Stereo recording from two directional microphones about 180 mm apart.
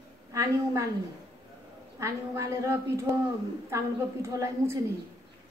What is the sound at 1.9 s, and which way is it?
A woman's voice, 15° right (ahead or behind).